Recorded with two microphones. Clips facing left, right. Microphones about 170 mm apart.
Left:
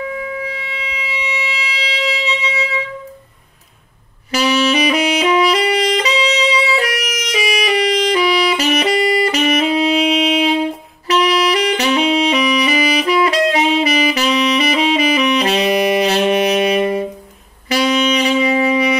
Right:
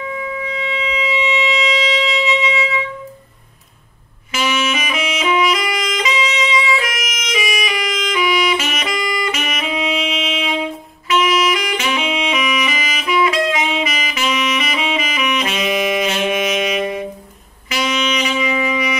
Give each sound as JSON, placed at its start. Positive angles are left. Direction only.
{"t": 0.0, "sound": "wind instrument", "side_deg": 40}
{"t": 1.8, "sound": "music", "side_deg": 35}
{"t": 4.3, "sound": "saxophone", "side_deg": 35}